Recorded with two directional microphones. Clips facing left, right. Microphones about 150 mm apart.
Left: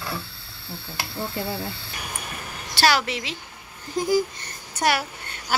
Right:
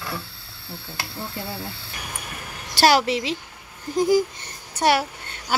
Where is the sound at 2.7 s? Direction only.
40° right (ahead or behind).